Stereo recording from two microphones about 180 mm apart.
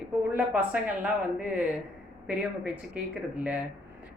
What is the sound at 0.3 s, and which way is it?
Speech, 5° right (ahead or behind).